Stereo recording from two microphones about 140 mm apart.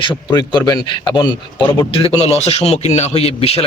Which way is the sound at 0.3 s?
30° left (ahead or behind).